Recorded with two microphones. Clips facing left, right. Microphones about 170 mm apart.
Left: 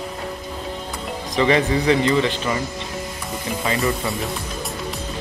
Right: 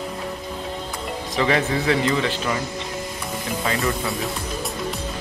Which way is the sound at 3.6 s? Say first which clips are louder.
Left 2 dB; centre (ahead or behind).